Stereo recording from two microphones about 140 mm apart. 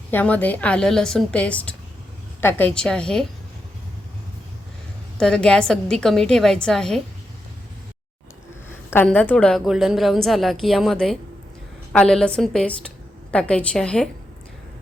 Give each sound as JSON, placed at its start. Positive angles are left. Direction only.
{"t": 0.1, "sound": "a woman's voice", "side_deg": 15}
{"t": 5.1, "sound": "a woman's voice", "side_deg": 5}
{"t": 8.7, "sound": "a sound", "side_deg": 15}
{"t": 9.0, "sound": "a woman's voice", "side_deg": 10}